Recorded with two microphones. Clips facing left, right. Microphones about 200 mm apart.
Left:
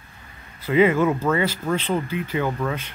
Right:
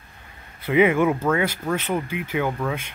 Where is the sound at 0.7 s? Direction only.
15° right (ahead or behind).